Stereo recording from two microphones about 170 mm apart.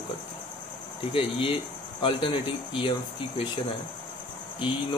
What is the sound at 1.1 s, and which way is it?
Speech, 30° left (ahead or behind).